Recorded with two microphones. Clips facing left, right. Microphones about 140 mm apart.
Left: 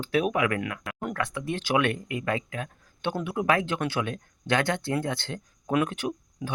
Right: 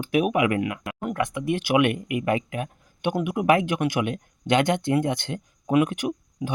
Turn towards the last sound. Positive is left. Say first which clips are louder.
# right 4 dB
turn(degrees=-15)  # may be behind; listen again after turning